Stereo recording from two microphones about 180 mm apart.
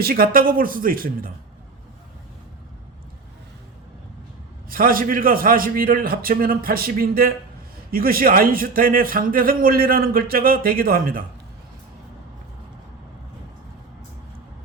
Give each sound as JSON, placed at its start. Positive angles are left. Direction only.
{"t": 0.0, "sound": "a man's voice", "side_deg": -55}
{"t": 4.7, "sound": "a man's voice", "side_deg": -55}